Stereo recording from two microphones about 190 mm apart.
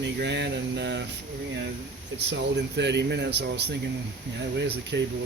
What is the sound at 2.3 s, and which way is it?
Speech, 65° right (ahead or behind).